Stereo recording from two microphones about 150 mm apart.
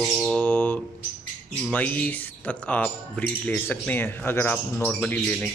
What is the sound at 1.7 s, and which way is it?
Speech, 10° left (ahead or behind).